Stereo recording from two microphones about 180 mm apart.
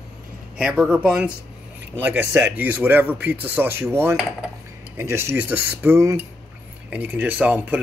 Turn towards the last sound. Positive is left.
turn(degrees=-10)  # may be behind; listen again after turning